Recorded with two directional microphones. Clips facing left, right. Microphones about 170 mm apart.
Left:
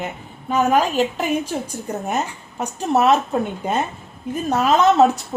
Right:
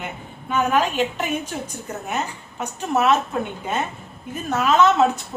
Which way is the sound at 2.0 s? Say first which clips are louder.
Left 1 dB; 40° left (ahead or behind).